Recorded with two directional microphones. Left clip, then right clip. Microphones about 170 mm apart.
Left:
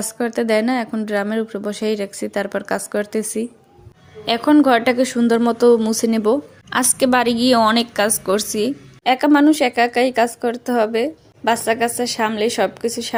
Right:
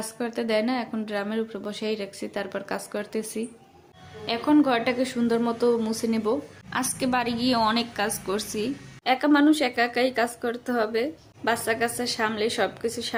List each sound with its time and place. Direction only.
0.0 s a woman's voice: 45° left (ahead or behind)